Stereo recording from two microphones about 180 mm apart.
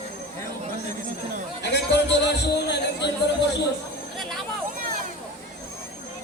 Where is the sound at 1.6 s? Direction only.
70° left (ahead or behind).